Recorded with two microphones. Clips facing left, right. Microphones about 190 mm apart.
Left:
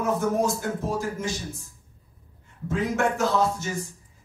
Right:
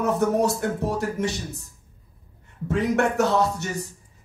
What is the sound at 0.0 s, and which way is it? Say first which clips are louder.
Speech: right 3 dB; 65° right (ahead or behind).